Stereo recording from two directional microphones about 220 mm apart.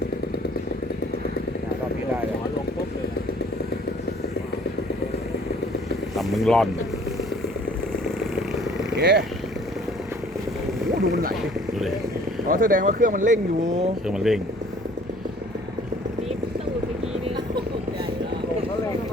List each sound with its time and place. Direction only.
6.1 s speech: centre (ahead or behind)
9.0 s speech: 45° right (ahead or behind)
11.0 s speech: 40° right (ahead or behind)
12.5 s speech: 40° right (ahead or behind)
14.1 s speech: centre (ahead or behind)
17.2 s vehicle: 20° right (ahead or behind)